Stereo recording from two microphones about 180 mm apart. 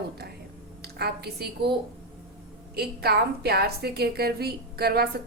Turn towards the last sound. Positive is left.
turn(degrees=-60)  # may be behind; listen again after turning